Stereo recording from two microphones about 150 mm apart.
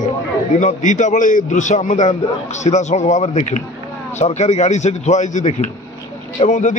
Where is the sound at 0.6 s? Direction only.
55° left (ahead or behind).